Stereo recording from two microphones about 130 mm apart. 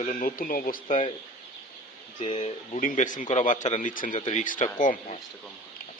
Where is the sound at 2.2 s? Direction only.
65° left (ahead or behind).